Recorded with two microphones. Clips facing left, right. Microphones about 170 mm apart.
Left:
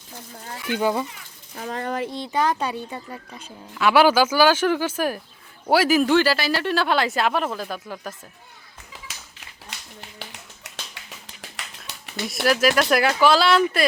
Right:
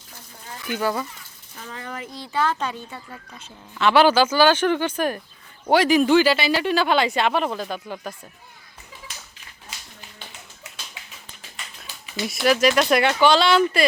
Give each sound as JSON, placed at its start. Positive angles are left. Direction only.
{"t": 0.7, "sound": "speech", "side_deg": 20}
{"t": 1.5, "sound": "speech", "side_deg": 45}
{"t": 2.0, "sound": "speech", "side_deg": 20}
{"t": 9.6, "sound": "finger snapping", "side_deg": 70}
{"t": 11.9, "sound": "a sound", "side_deg": 60}
{"t": 12.3, "sound": "speech", "side_deg": 0}